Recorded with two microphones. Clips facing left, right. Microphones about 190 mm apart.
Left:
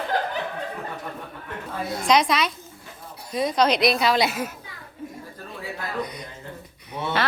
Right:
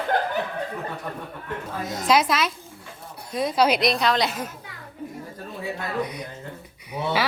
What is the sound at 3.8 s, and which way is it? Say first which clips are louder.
Speech: left 1 dB; 5° left (ahead or behind).